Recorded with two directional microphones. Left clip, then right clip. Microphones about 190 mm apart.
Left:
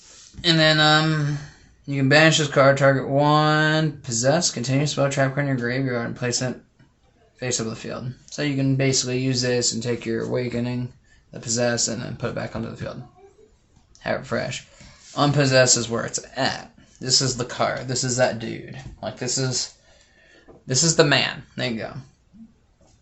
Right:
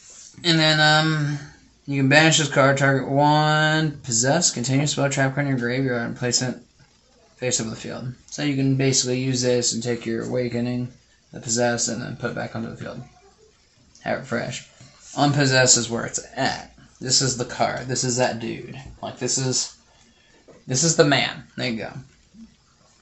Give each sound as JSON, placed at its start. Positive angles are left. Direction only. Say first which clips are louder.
{"t": 0.4, "sound": "speech", "louder": "even", "side_deg": 25}
{"t": 9.0, "sound": "speech", "louder": "right 1 dB", "side_deg": 35}
{"t": 12.9, "sound": "speech", "louder": "left 1 dB", "side_deg": 35}
{"t": 20.7, "sound": "speech", "louder": "even", "side_deg": 40}